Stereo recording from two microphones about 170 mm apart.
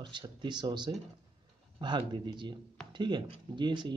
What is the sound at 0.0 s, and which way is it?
Speech, 30° right (ahead or behind).